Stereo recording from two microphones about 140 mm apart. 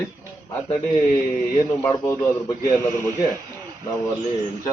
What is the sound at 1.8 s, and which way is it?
Speech, 20° left (ahead or behind).